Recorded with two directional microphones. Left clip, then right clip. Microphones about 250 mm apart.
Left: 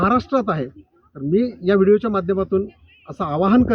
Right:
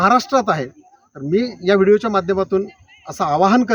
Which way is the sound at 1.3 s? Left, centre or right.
Right.